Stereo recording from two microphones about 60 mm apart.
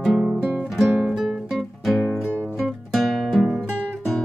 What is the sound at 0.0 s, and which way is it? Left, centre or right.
Guitar, centre.